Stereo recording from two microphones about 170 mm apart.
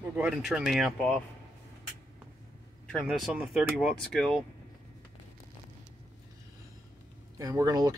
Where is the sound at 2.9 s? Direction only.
5° left (ahead or behind).